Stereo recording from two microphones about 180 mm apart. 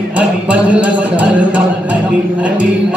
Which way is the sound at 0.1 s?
5° right (ahead or behind).